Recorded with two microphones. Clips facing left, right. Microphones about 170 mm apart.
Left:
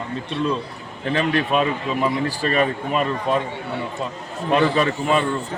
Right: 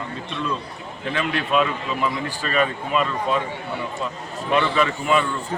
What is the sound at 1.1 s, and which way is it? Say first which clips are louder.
A man's voice: left 2 dB; 40° left (ahead or behind).